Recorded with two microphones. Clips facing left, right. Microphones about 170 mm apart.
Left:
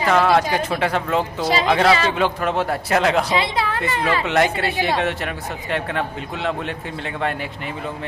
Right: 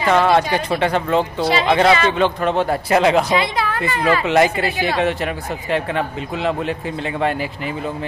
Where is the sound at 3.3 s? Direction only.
30° left (ahead or behind).